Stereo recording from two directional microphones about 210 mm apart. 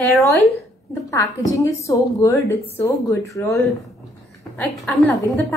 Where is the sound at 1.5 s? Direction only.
15° left (ahead or behind).